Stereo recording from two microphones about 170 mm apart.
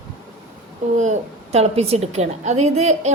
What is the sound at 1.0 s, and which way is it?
A woman's voice, 40° right (ahead or behind).